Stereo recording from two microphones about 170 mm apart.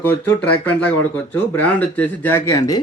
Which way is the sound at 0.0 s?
10° left (ahead or behind).